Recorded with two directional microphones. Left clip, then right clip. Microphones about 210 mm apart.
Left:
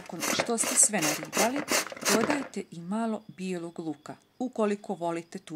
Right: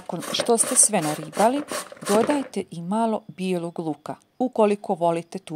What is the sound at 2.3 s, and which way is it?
Speech, 30° right (ahead or behind).